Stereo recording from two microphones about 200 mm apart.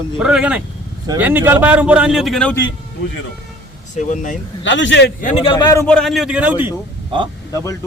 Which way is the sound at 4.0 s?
40° left (ahead or behind).